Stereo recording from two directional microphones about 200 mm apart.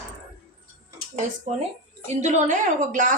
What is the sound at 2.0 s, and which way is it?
A woman's voice, 35° right (ahead or behind).